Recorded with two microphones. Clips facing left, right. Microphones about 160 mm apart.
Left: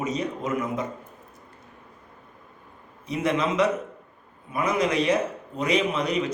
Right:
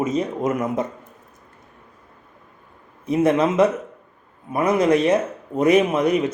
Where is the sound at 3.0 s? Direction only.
50° right (ahead or behind).